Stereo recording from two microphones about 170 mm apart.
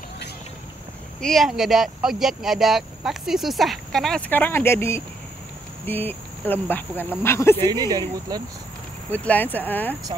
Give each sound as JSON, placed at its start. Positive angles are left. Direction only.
{"t": 1.2, "sound": "speech", "side_deg": 0}
{"t": 7.5, "sound": "speech", "side_deg": -20}
{"t": 9.1, "sound": "speech", "side_deg": 10}